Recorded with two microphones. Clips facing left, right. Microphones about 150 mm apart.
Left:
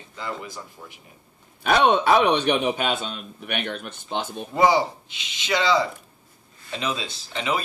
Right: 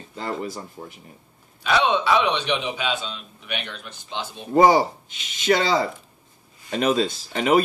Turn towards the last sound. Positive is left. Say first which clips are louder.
# right 7 dB
turn(degrees=-50)  # may be behind; listen again after turning